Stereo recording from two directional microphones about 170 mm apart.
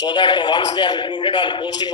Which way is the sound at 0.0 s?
25° left (ahead or behind).